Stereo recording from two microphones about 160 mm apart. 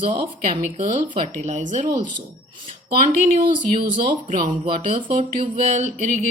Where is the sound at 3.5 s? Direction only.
30° right (ahead or behind).